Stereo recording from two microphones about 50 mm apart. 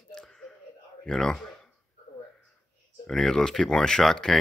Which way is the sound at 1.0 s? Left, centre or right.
Centre.